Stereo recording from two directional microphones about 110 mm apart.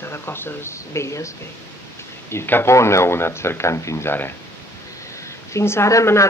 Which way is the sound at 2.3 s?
20° left (ahead or behind).